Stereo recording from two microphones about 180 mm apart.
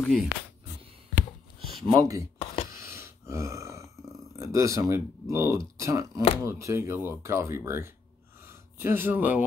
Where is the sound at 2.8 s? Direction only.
15° right (ahead or behind).